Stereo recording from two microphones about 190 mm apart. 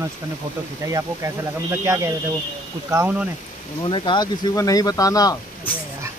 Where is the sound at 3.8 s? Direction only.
25° left (ahead or behind).